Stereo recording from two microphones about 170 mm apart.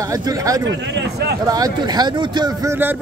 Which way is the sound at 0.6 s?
90° right.